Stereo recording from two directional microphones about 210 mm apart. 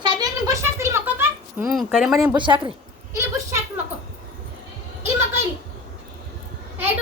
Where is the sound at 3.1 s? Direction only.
10° right (ahead or behind).